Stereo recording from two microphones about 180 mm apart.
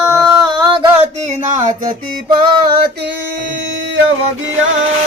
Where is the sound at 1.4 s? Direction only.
45° right (ahead or behind).